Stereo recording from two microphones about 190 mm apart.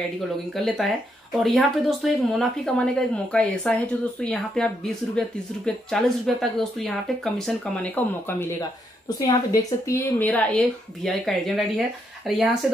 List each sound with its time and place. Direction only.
0.7 s speech: centre (ahead or behind)
5.9 s a woman's voice: centre (ahead or behind)